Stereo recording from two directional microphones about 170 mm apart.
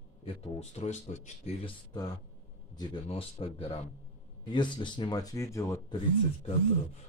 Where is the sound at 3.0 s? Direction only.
40° left (ahead or behind).